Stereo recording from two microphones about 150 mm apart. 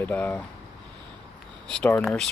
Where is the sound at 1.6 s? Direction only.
5° left (ahead or behind).